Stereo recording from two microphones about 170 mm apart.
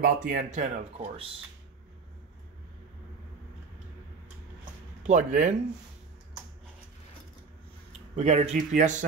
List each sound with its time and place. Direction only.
0.0 s speech: 55° right (ahead or behind)
5.0 s speech: 45° right (ahead or behind)
8.2 s speech: 40° right (ahead or behind)